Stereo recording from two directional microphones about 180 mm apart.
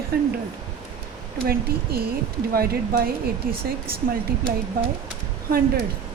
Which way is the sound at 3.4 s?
55° right (ahead or behind).